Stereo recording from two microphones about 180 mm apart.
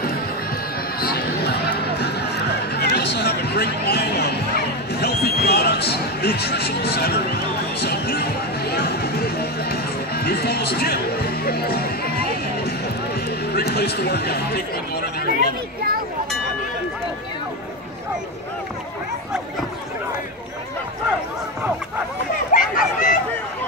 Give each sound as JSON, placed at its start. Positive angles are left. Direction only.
{"t": 1.0, "sound": "music", "side_deg": 60}
{"t": 13.5, "sound": "speech", "side_deg": 65}
{"t": 22.5, "sound": "chatter", "side_deg": 45}